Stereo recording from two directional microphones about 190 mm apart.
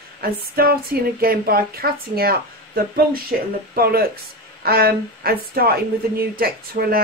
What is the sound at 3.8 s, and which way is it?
Speech, 50° right (ahead or behind).